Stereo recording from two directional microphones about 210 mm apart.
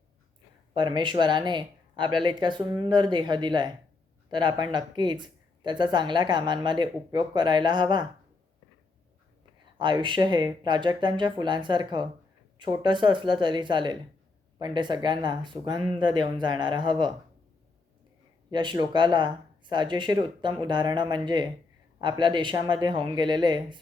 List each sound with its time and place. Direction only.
0.8 s speech: 20° right (ahead or behind)
9.7 s speech: 20° right (ahead or behind)
18.5 s speech: 20° right (ahead or behind)